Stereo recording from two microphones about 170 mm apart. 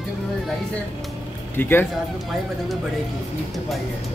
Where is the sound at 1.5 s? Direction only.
10° left (ahead or behind).